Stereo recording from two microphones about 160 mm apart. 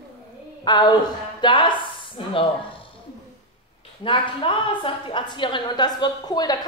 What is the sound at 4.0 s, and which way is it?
Speech, 35° left (ahead or behind).